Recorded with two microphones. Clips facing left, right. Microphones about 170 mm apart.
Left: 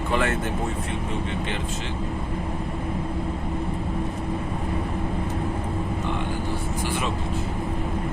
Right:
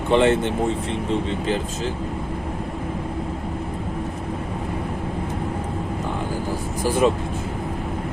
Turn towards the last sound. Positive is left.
turn(degrees=-45)  # may be behind; listen again after turning